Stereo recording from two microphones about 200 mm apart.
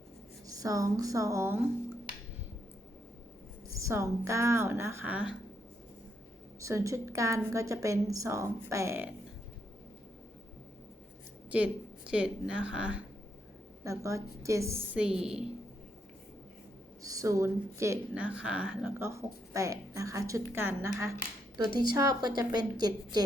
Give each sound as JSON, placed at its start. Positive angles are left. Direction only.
{"t": 0.4, "sound": "speech", "side_deg": -15}
{"t": 3.8, "sound": "speech", "side_deg": -15}
{"t": 6.6, "sound": "speech", "side_deg": -15}
{"t": 12.1, "sound": "speech", "side_deg": -5}
{"t": 17.0, "sound": "a woman's voice", "side_deg": -15}